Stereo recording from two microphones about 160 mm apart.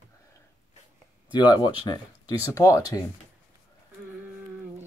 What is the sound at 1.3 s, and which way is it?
Speech, 25° left (ahead or behind).